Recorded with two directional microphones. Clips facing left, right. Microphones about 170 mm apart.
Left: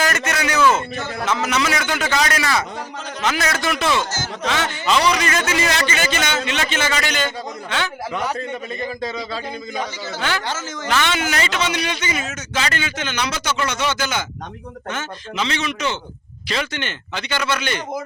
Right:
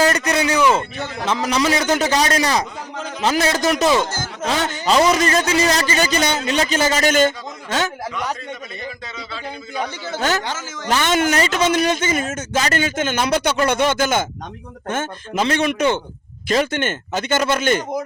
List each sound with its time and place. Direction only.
0.0 s a sound: 30° right (ahead or behind)
0.8 s a man's voice: 30° right (ahead or behind)
9.1 s speech: 40° left (ahead or behind)
9.8 s a man's voice: 45° right (ahead or behind)